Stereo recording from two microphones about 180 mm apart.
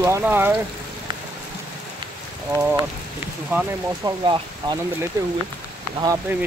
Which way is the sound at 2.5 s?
15° right (ahead or behind).